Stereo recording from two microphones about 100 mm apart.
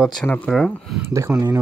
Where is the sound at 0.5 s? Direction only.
Centre (ahead or behind).